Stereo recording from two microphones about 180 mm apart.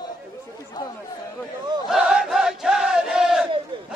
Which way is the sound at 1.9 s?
5° right (ahead or behind).